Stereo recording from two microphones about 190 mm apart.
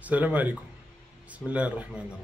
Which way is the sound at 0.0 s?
10° right (ahead or behind).